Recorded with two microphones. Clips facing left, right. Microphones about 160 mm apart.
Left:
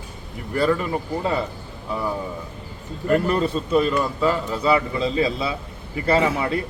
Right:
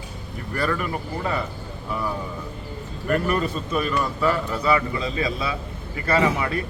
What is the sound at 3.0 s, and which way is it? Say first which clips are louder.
A man's voice: left 3 dB; 25° left (ahead or behind).